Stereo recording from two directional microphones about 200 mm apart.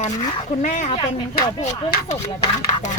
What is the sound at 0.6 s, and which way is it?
Speech, 35° left (ahead or behind).